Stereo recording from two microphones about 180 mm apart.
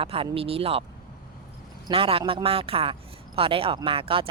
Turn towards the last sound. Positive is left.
turn(degrees=-30)  # may be behind; listen again after turning